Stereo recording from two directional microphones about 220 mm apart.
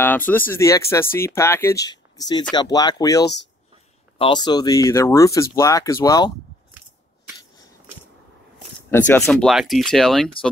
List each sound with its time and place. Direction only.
0.0 s speech: 10° left (ahead or behind)
8.9 s speech: 10° left (ahead or behind)